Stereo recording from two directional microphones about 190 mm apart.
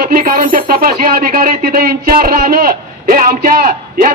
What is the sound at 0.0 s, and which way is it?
Speech, 50° right (ahead or behind).